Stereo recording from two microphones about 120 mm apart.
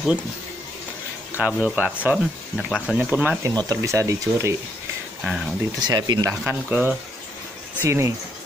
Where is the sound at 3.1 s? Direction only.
15° right (ahead or behind).